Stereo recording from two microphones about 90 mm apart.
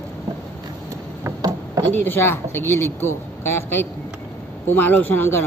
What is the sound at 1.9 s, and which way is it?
A woman's voice, 25° left (ahead or behind).